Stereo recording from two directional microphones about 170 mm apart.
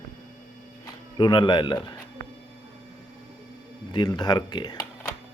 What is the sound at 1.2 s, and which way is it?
Speech, 25° left (ahead or behind).